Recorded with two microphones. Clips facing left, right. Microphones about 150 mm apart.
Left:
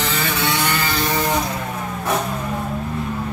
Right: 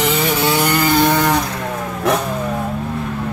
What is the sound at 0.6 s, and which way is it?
Vehicle, 45° right (ahead or behind).